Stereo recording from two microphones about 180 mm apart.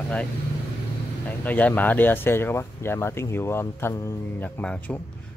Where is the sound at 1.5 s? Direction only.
10° left (ahead or behind).